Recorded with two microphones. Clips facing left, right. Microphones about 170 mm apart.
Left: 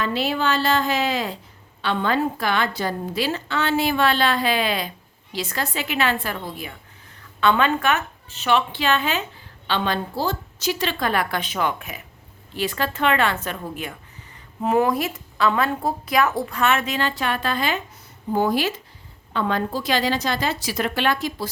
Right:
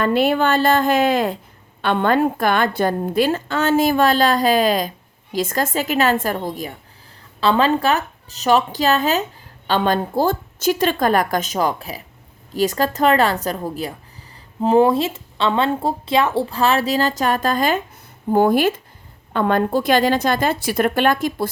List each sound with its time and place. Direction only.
0.0 s a woman's voice: 55° right (ahead or behind)